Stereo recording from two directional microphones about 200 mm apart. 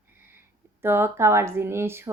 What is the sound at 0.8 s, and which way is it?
A woman's voice, 10° right (ahead or behind).